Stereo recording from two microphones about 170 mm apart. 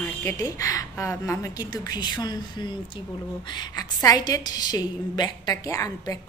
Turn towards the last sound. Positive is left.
turn(degrees=20)  # may be behind; listen again after turning